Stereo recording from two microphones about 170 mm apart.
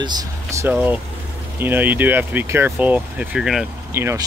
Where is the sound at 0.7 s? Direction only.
10° right (ahead or behind).